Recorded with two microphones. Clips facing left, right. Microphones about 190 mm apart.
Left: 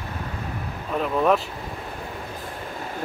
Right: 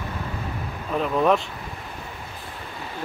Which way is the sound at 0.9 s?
Centre (ahead or behind).